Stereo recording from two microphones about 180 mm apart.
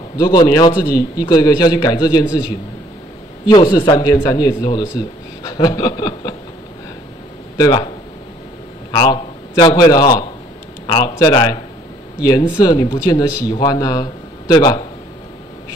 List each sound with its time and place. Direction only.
0.2 s a man's voice: 20° left (ahead or behind)
3.4 s a man's voice: 25° left (ahead or behind)
7.5 s speech: 20° left (ahead or behind)
8.9 s a sound: 25° left (ahead or behind)
9.8 s a man's voice: 20° left (ahead or behind)